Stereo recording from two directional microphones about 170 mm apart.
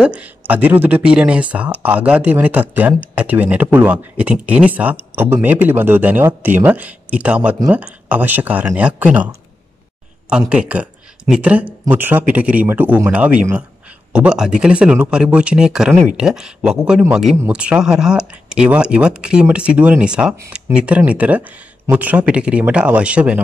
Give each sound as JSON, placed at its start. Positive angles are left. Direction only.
{"t": 0.0, "sound": "speech", "side_deg": -10}
{"t": 10.5, "sound": "speech", "side_deg": -5}